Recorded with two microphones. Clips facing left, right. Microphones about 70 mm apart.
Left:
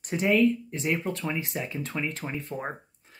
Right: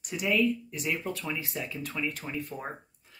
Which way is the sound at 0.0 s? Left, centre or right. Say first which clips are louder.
Left 5 dB; left.